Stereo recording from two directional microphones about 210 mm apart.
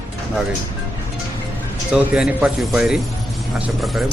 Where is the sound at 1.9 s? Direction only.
5° right (ahead or behind).